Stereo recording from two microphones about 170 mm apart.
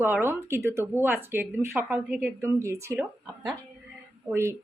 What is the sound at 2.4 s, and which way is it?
Speech, 15° right (ahead or behind).